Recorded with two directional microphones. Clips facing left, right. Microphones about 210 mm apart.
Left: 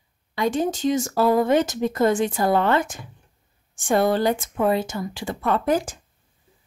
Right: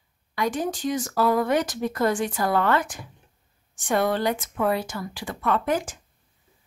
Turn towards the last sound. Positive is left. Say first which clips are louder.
# left 3 dB
turn(degrees=35)  # may be behind; listen again after turning